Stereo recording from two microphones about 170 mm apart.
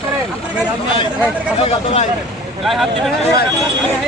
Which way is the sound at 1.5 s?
35° left (ahead or behind).